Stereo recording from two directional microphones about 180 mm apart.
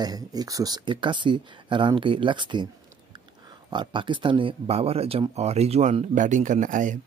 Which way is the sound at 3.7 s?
25° right (ahead or behind).